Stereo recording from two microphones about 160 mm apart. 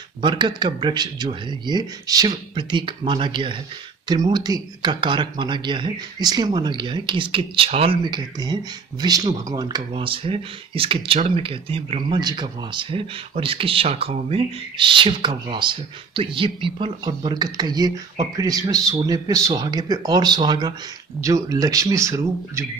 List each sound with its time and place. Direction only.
0.2 s speech: 30° right (ahead or behind)